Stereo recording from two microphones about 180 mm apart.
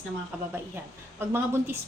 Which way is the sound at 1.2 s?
10° right (ahead or behind).